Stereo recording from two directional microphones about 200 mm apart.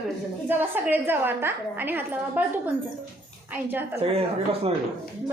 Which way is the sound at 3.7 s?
10° right (ahead or behind).